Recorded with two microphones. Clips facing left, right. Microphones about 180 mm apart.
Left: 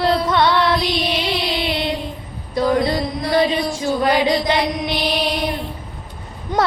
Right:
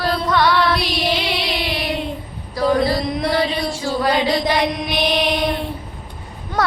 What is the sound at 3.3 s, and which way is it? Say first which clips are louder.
Child singing: left 3 dB; 20° left (ahead or behind).